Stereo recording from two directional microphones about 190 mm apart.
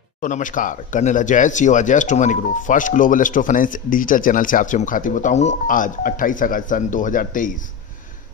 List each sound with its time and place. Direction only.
0.2 s speech: 45° left (ahead or behind)